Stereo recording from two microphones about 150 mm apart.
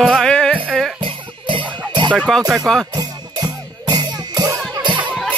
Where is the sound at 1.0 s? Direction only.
35° right (ahead or behind).